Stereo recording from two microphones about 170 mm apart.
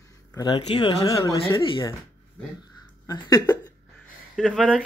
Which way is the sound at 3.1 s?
20° left (ahead or behind).